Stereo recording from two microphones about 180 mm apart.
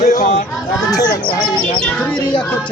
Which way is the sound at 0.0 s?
40° left (ahead or behind).